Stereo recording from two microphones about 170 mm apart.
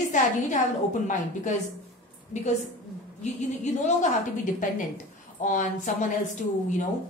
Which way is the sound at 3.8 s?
50° left (ahead or behind).